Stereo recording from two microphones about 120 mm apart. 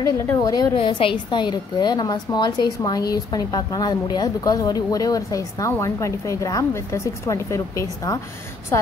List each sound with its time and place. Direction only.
0.4 s a woman's voice: 30° left (ahead or behind)
0.7 s a woman's voice: 50° left (ahead or behind); by 8.2 s 25° left (ahead or behind)